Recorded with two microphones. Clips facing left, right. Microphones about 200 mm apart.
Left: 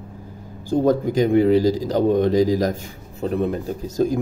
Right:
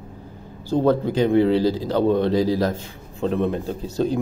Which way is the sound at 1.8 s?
45° left (ahead or behind).